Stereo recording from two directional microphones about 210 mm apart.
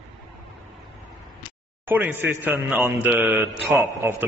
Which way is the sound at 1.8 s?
10° right (ahead or behind).